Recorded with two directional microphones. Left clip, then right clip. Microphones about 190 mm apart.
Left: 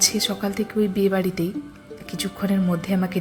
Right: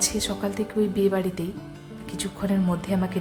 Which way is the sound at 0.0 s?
10° left (ahead or behind).